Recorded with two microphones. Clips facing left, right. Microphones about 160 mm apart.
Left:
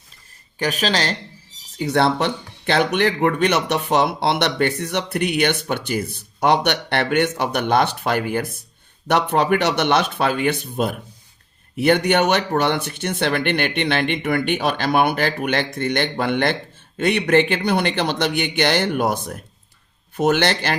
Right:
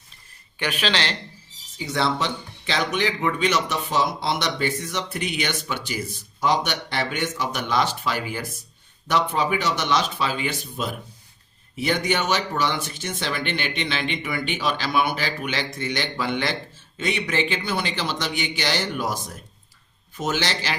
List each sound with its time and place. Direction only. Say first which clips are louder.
0.6 s speech: left 4 dB; 40° left (ahead or behind)
1.8 s speech: left 6 dB; 60° left (ahead or behind)